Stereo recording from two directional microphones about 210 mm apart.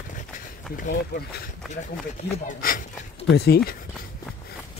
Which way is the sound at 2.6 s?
40° left (ahead or behind).